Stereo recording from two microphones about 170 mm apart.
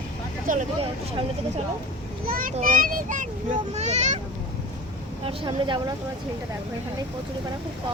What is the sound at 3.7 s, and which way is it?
Speech, 40° right (ahead or behind).